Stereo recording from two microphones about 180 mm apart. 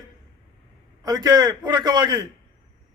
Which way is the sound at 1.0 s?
20° right (ahead or behind).